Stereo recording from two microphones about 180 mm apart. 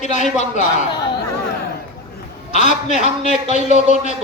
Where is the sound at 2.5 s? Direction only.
45° left (ahead or behind).